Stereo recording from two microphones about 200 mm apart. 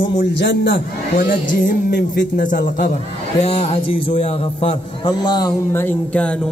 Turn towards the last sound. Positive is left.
turn(degrees=10)  # may be behind; listen again after turning